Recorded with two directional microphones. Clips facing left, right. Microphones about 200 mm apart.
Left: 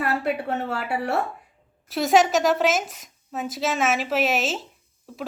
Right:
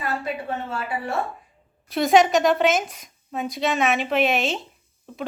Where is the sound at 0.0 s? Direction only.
70° left (ahead or behind).